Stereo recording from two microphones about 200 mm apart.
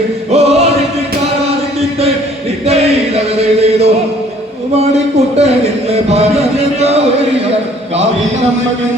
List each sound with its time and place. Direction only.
0.3 s music: 30° right (ahead or behind)
2.6 s chant: 30° right (ahead or behind)
4.8 s a sound: 30° right (ahead or behind)